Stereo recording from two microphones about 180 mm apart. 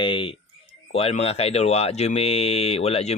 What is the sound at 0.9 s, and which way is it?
Speech, 35° left (ahead or behind).